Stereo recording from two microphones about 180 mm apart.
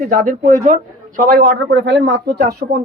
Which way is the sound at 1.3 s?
65° right (ahead or behind).